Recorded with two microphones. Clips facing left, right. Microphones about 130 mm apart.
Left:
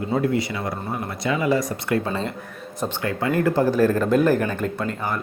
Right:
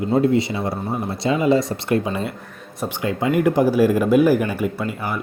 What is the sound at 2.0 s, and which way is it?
Speech, 15° right (ahead or behind).